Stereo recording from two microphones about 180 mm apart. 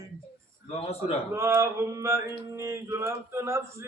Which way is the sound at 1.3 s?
15° right (ahead or behind).